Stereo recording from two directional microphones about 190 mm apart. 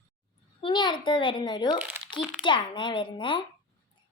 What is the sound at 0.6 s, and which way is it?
A woman's voice, 25° left (ahead or behind).